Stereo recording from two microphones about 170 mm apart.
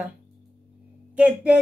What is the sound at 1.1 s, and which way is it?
Speech, 5° right (ahead or behind).